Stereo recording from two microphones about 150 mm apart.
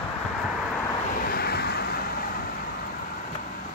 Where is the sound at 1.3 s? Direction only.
90° left.